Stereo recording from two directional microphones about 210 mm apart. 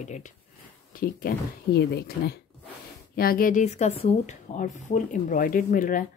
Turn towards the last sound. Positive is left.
turn(degrees=40)  # may be behind; listen again after turning